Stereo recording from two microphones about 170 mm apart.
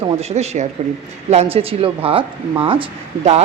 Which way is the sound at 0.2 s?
40° right (ahead or behind).